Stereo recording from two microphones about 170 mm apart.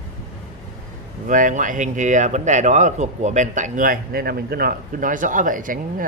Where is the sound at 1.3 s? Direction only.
50° right (ahead or behind).